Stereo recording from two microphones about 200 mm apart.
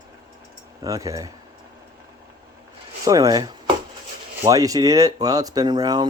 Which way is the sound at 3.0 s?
20° right (ahead or behind).